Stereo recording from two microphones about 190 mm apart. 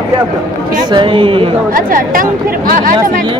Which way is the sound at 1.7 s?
45° right (ahead or behind).